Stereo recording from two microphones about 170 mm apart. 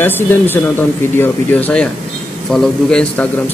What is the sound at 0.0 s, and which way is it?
A man's voice, 15° left (ahead or behind).